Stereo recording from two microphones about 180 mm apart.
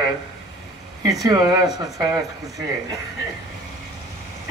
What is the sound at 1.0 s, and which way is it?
Speech, 20° right (ahead or behind).